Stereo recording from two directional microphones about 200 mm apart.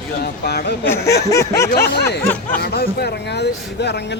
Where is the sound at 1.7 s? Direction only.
55° left (ahead or behind).